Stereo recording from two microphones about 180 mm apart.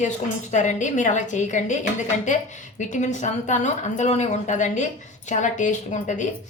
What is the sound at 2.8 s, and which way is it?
Speech, 40° left (ahead or behind).